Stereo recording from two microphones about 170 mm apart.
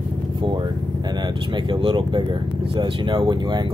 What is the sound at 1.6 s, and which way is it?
Speech, 30° right (ahead or behind).